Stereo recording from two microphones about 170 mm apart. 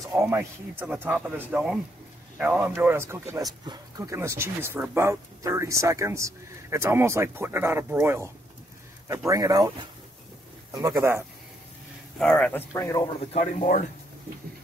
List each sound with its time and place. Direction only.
0.0 s speech: 15° right (ahead or behind)
10.7 s speech: 20° right (ahead or behind)
12.2 s speech: 5° left (ahead or behind)
13.3 s speech: 40° left (ahead or behind)